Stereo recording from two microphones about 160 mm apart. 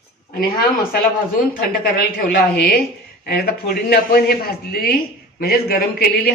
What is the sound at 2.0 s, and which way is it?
A woman's voice, 75° left (ahead or behind).